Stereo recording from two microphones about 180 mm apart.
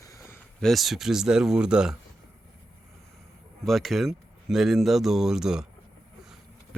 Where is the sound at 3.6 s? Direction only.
Centre (ahead or behind).